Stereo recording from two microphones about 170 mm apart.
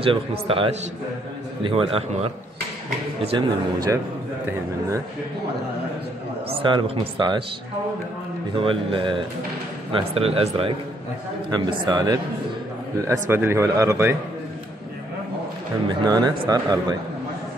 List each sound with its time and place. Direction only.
0.0 s speech: 35° right (ahead or behind)
3.3 s speech: 25° right (ahead or behind)
6.5 s speech: 30° right (ahead or behind)
8.5 s speech: 30° right (ahead or behind)
11.5 s speech: 25° right (ahead or behind)
15.9 s speech: 25° right (ahead or behind)